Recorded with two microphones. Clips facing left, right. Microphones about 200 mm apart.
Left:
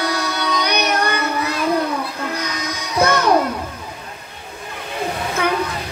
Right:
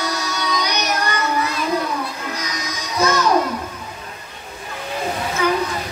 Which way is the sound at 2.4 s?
60° left (ahead or behind).